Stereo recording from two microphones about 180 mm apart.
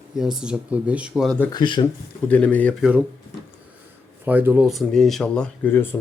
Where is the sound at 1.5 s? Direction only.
25° left (ahead or behind).